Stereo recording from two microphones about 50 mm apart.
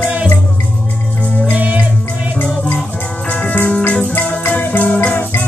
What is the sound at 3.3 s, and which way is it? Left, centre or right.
Music, left.